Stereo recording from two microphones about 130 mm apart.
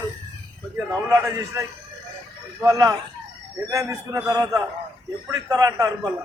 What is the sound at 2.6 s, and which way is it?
A man's voice, 30° right (ahead or behind).